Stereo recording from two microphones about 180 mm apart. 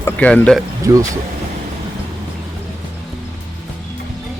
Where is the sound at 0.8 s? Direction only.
15° right (ahead or behind).